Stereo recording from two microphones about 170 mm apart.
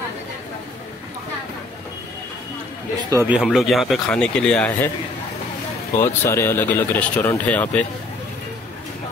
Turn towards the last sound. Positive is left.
turn(degrees=10)  # may be behind; listen again after turning